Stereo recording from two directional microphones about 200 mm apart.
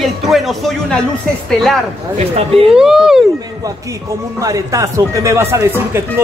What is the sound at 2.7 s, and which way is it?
Speech, 5° right (ahead or behind).